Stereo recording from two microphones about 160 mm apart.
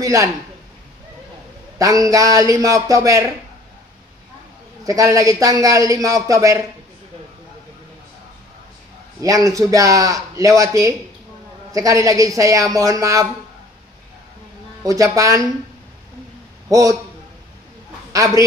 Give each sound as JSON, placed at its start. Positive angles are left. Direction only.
{"t": 0.0, "sound": "a man's voice", "side_deg": -20}
{"t": 1.8, "sound": "a man's voice", "side_deg": -20}
{"t": 4.8, "sound": "a man's voice", "side_deg": -20}
{"t": 9.2, "sound": "a man's voice", "side_deg": -20}
{"t": 14.8, "sound": "a man's voice", "side_deg": -20}
{"t": 18.1, "sound": "a man's voice", "side_deg": -20}